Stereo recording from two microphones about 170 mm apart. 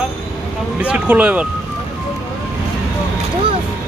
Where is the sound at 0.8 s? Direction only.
5° right (ahead or behind).